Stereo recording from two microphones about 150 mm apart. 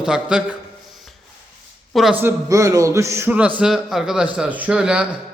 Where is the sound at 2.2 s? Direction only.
20° right (ahead or behind).